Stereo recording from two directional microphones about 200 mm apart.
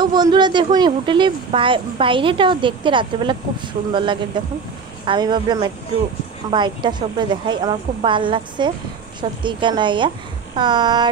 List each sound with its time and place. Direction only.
0.0 s speech: 20° right (ahead or behind)